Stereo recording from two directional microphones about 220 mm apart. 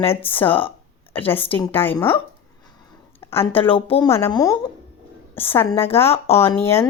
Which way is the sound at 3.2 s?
10° left (ahead or behind).